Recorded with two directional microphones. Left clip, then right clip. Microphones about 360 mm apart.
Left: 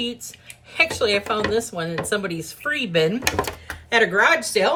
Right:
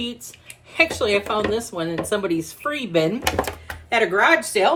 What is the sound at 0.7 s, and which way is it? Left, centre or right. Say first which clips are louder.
Speech: even; centre.